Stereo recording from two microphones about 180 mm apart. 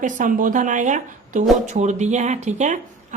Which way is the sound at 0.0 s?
45° right (ahead or behind).